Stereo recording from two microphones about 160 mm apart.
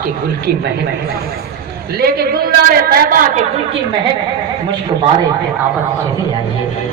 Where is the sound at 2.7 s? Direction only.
70° right (ahead or behind).